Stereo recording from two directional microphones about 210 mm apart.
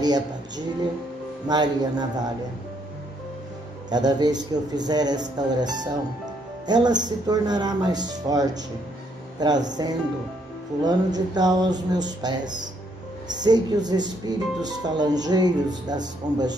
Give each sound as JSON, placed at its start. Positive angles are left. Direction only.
{"t": 1.5, "sound": "speech", "side_deg": -20}
{"t": 3.9, "sound": "speech", "side_deg": -20}